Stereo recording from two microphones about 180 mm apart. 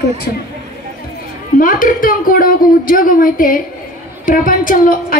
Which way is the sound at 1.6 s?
50° left (ahead or behind).